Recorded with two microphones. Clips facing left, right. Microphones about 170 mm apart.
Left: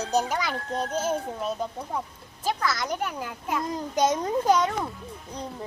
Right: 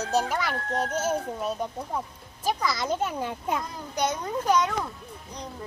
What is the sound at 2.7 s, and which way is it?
Speech, 20° right (ahead or behind).